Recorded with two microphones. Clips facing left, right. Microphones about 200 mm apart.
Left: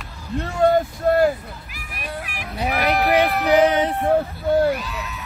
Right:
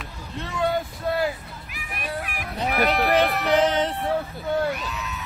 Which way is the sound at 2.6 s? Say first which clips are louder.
Left 2 dB; 10° left (ahead or behind).